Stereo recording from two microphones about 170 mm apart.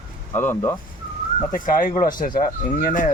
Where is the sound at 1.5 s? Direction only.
50° left (ahead or behind).